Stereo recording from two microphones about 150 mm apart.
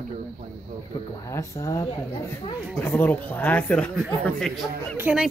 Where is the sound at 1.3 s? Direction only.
20° left (ahead or behind); by 4.7 s centre (ahead or behind).